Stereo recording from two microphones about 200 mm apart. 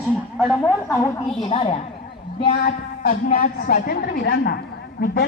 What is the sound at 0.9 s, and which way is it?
Speech, 15° left (ahead or behind).